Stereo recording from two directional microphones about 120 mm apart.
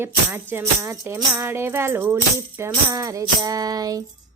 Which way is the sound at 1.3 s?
20° right (ahead or behind).